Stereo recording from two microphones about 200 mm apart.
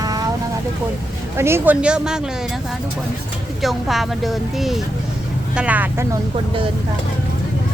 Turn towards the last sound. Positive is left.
turn(degrees=-10)  # may be behind; listen again after turning